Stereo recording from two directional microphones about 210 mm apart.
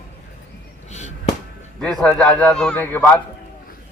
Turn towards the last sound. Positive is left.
turn(degrees=10)  # may be behind; listen again after turning